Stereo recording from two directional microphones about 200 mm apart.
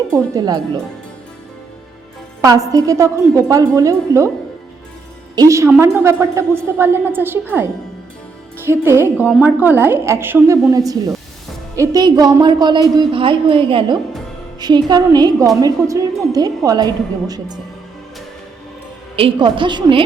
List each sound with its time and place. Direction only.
0.3 s a woman's voice: 20° right (ahead or behind)
2.4 s a woman's voice: 15° right (ahead or behind)
5.3 s a woman's voice: 15° right (ahead or behind)
19.1 s a woman's voice: 25° right (ahead or behind)